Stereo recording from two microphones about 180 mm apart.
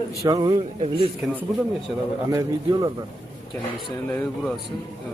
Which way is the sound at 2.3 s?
20° right (ahead or behind).